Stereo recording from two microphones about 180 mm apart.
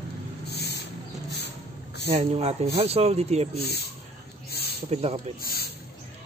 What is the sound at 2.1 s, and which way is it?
Speech, 35° right (ahead or behind).